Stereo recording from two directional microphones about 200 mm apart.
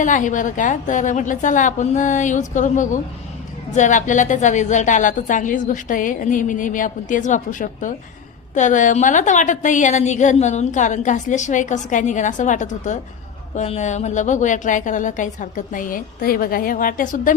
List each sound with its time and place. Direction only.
0.0 s a woman's voice: 40° left (ahead or behind)